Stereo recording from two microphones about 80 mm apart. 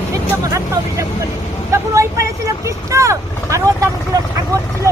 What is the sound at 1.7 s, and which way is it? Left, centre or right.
Vehicle, right.